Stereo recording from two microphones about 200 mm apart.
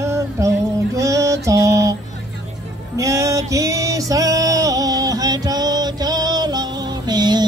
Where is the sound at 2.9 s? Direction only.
15° right (ahead or behind).